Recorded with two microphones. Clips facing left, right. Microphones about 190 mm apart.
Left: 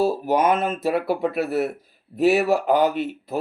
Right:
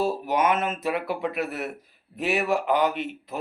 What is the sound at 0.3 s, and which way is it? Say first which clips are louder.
A man's voice: left 4 dB; 35° left (ahead or behind).